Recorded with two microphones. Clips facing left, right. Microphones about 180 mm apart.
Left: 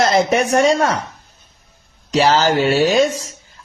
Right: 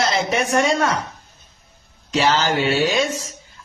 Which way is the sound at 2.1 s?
45° left (ahead or behind).